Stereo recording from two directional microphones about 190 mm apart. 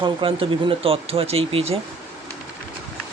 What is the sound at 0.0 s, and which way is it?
Speech, 25° right (ahead or behind).